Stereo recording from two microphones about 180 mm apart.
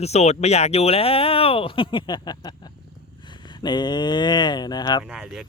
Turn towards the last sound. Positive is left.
turn(degrees=-5)  # may be behind; listen again after turning